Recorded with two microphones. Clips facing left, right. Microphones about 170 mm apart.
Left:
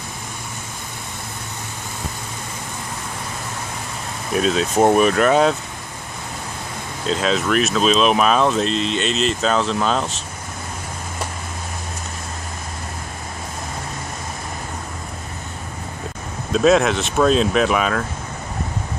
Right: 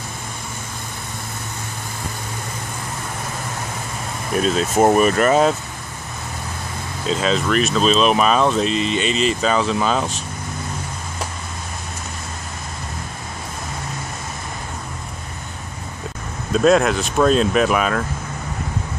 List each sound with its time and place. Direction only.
4.3 s speech: centre (ahead or behind)
7.1 s speech: centre (ahead or behind)
16.5 s speech: centre (ahead or behind)